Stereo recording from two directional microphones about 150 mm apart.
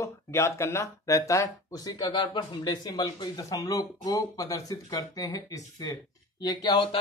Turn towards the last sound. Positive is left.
turn(degrees=30)  # may be behind; listen again after turning